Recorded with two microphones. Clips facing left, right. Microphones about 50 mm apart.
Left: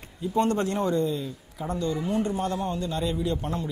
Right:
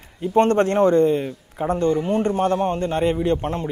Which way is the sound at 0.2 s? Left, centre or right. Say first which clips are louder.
Right 8 dB; right.